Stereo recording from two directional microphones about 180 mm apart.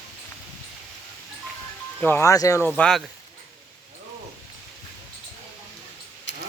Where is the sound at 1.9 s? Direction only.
10° left (ahead or behind).